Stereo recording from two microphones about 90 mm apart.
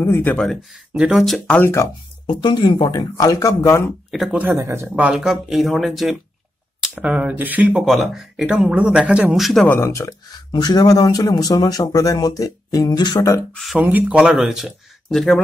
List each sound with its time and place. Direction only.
0.0 s speech: 25° left (ahead or behind)
0.4 s speech: centre (ahead or behind)
1.5 s speech: 25° left (ahead or behind)
2.2 s speech: 60° left (ahead or behind); by 3.9 s 30° left (ahead or behind)
4.1 s speech: centre (ahead or behind)
4.4 s speech: 25° right (ahead or behind)
4.9 s speech: 15° right (ahead or behind)
7.9 s speech: centre (ahead or behind)
9.3 s speech: centre (ahead or behind)
9.8 s speech: 35° left (ahead or behind)
10.5 s speech: 50° left (ahead or behind)
13.7 s speech: 20° right (ahead or behind); by 15.4 s 5° left (ahead or behind)